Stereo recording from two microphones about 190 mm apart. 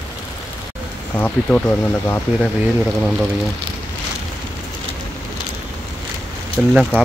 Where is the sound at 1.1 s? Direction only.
5° left (ahead or behind).